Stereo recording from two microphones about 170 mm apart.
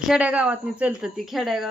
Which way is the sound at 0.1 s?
5° right (ahead or behind).